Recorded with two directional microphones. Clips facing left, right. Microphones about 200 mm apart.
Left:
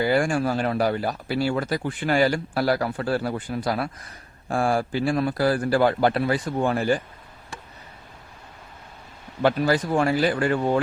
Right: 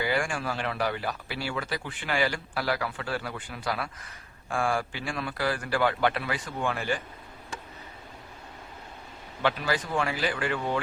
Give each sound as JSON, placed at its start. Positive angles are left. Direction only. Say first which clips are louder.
{"t": 0.0, "sound": "speech", "louder": "left 8 dB", "side_deg": 40}
{"t": 9.4, "sound": "speech", "louder": "left 7 dB", "side_deg": 40}